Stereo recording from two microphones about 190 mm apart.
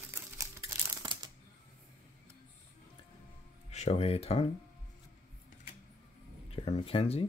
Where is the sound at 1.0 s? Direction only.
25° right (ahead or behind).